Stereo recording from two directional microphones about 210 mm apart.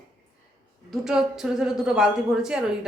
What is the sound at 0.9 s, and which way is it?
A woman's voice, centre (ahead or behind).